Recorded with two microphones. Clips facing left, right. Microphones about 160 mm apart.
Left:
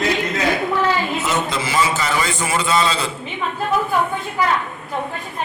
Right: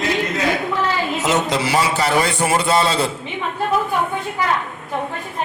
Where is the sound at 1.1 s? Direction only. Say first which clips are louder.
Right 3 dB; 80° right; by 3.1 s 55° right (ahead or behind).